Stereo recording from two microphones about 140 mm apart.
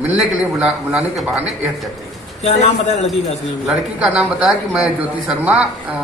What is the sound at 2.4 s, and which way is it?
Speech, 55° left (ahead or behind).